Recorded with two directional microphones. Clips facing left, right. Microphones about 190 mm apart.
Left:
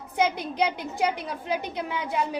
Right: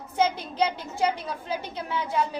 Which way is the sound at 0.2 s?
15° left (ahead or behind).